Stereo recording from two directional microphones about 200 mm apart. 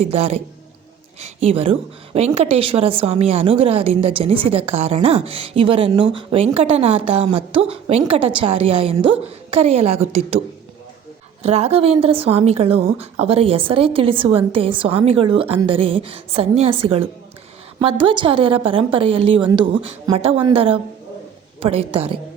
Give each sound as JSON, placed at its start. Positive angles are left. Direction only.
{"t": 0.0, "sound": "a man's voice", "side_deg": -30}
{"t": 11.4, "sound": "a woman's voice", "side_deg": -30}